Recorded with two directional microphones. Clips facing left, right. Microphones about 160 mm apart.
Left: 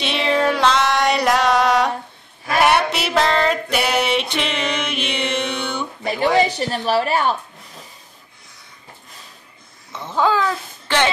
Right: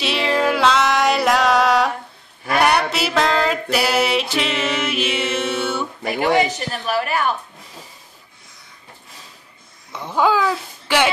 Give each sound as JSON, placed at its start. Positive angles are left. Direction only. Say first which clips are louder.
{"t": 0.0, "sound": "music", "louder": "even", "side_deg": -5}
{"t": 6.3, "sound": "a woman's voice", "louder": "left 1 dB", "side_deg": 30}
{"t": 9.9, "sound": "speech", "louder": "right 1 dB", "side_deg": -10}